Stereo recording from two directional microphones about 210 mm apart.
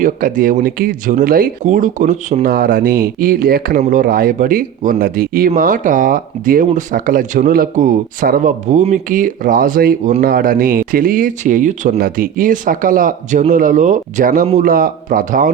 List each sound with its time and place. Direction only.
0.0 s speech: 40° right (ahead or behind)